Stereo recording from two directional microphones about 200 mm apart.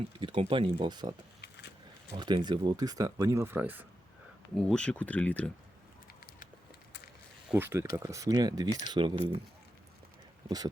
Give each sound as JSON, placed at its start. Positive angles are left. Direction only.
{"t": 0.2, "sound": "speech", "side_deg": -25}
{"t": 4.5, "sound": "speech", "side_deg": 5}
{"t": 7.5, "sound": "speech", "side_deg": -10}